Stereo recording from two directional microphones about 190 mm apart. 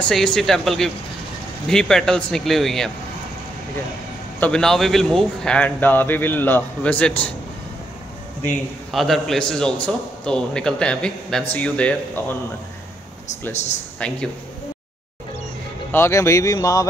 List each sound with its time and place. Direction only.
0.1 s speech: centre (ahead or behind)
4.4 s a man's voice: 5° left (ahead or behind)
8.5 s a man's voice: centre (ahead or behind)
13.9 s speech: 5° left (ahead or behind)
15.9 s a man's voice: 15° left (ahead or behind)